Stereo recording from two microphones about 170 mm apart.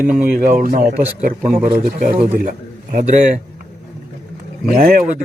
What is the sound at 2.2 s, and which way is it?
Speech, 40° right (ahead or behind).